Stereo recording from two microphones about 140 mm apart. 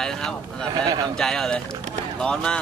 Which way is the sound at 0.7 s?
30° right (ahead or behind).